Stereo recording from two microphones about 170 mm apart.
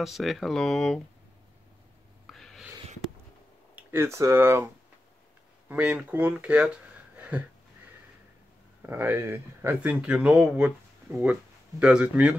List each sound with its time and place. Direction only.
0.0 s speech: centre (ahead or behind)
2.2 s a sound: centre (ahead or behind)
3.7 s speech: 15° right (ahead or behind)
5.7 s speech: 10° right (ahead or behind)
8.8 s speech: 10° right (ahead or behind)